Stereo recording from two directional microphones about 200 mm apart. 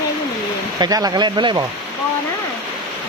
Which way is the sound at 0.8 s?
20° right (ahead or behind).